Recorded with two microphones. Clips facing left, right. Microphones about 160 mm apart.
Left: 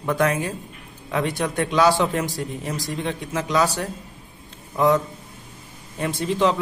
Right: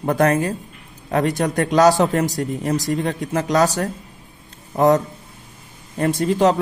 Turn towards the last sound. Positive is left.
turn(degrees=-45)  # may be behind; listen again after turning